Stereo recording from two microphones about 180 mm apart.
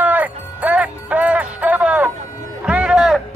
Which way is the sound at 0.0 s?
10° right (ahead or behind).